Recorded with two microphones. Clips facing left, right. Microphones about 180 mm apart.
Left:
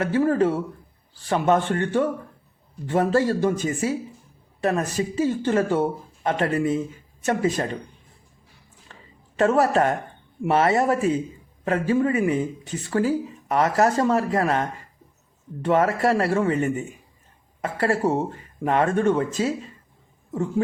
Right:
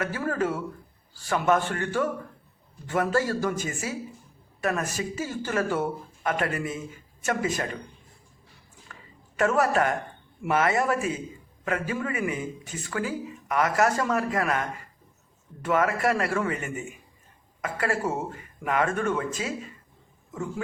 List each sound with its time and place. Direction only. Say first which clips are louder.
0.0 s speech: left 8 dB; 25° left (ahead or behind)
8.9 s a sound: left 1 dB; 30° left (ahead or behind)
10.4 s speech: left 4 dB; 30° left (ahead or behind)